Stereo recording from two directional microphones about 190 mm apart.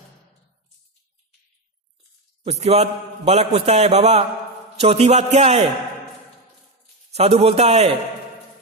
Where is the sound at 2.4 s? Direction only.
35° right (ahead or behind).